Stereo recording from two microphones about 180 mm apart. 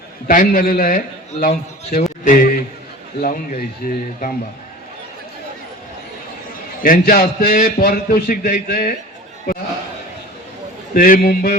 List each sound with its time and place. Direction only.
0.3 s a man's voice: 50° left (ahead or behind)
6.8 s a man's voice: 50° left (ahead or behind)
10.9 s a man's voice: 50° left (ahead or behind)